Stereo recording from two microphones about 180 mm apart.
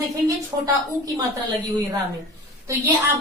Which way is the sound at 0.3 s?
20° right (ahead or behind).